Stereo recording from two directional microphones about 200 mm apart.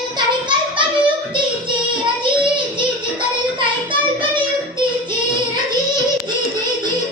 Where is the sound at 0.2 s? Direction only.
25° right (ahead or behind).